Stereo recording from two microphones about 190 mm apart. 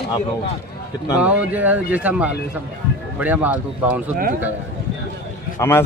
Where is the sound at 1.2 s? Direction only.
5° right (ahead or behind).